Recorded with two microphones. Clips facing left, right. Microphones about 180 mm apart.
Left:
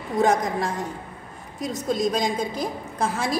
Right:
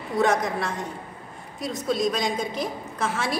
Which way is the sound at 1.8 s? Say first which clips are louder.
Left 1 dB; 45° left (ahead or behind).